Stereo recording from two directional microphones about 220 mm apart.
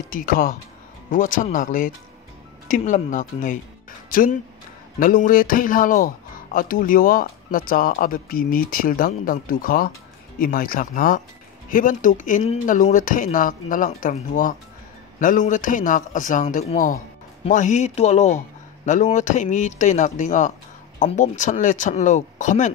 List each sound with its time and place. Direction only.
0.1 s speech: 40° left (ahead or behind)